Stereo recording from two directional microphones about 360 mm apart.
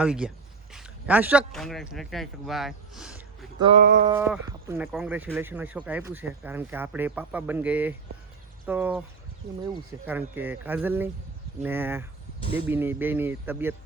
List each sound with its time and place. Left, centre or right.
0.0 s speech: centre
3.6 s a sound: right
4.1 s speech: centre
10.1 s speech: centre